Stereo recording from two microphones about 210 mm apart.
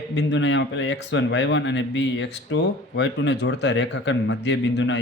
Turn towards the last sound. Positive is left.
turn(degrees=60)  # may be behind; listen again after turning